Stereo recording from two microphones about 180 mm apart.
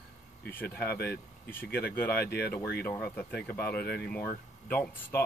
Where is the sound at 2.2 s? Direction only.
60° left (ahead or behind).